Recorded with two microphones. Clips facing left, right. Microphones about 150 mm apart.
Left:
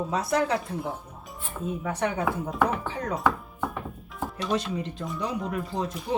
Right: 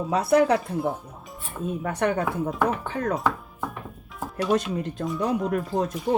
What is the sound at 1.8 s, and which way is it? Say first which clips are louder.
Speech: right 4 dB; 55° right (ahead or behind).